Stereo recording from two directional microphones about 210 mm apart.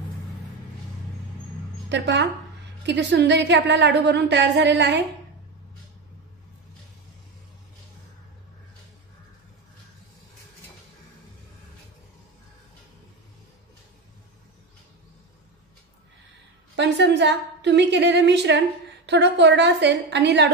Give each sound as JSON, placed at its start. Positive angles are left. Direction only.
{"t": 1.9, "sound": "a woman's voice", "side_deg": -55}
{"t": 16.7, "sound": "a woman's voice", "side_deg": -55}